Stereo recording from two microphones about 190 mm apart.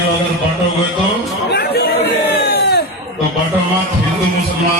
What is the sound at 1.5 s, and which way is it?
Chatter, 55° left (ahead or behind).